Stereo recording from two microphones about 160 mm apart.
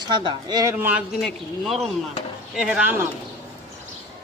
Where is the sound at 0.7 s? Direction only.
10° right (ahead or behind).